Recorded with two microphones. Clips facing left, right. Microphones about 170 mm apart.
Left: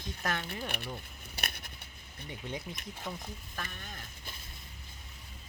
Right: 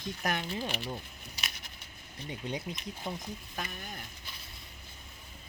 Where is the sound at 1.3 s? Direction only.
55° left (ahead or behind).